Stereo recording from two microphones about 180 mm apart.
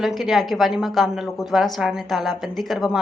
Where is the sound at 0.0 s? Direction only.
Centre (ahead or behind).